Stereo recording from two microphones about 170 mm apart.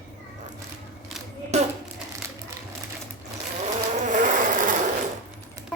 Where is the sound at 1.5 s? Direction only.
40° right (ahead or behind).